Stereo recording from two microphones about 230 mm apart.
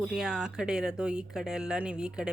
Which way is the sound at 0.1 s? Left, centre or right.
Centre.